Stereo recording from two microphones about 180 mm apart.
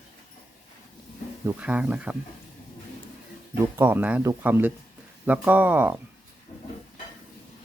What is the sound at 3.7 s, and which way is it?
Speech, 10° right (ahead or behind).